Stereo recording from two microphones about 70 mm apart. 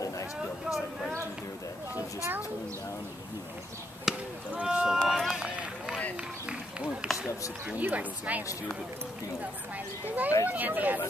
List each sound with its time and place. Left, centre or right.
2.0 s a sound: right
4.1 s chop: centre
4.6 s run: centre
4.8 s run: centre
5.4 s run: centre
7.1 s a sound: centre
7.7 s speech: right
10.0 s speech: right